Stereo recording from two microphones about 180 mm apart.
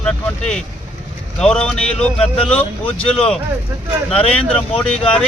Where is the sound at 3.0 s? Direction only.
35° left (ahead or behind).